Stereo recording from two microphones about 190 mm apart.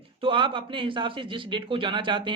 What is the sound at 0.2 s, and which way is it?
Speech, 25° right (ahead or behind).